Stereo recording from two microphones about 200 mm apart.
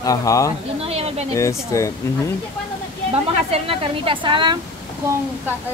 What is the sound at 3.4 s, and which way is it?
A woman's voice, 30° right (ahead or behind).